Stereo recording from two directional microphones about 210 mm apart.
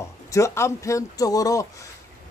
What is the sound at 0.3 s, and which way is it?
Speech, 15° left (ahead or behind).